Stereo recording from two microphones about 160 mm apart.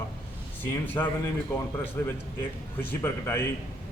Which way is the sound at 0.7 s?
10° left (ahead or behind).